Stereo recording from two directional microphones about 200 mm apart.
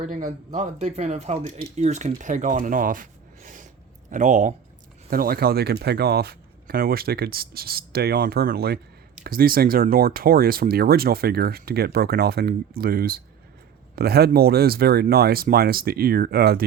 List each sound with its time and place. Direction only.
0.0 s speech: 35° right (ahead or behind)